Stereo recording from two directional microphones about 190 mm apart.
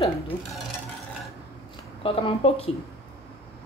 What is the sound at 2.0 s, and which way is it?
Speech, 30° left (ahead or behind).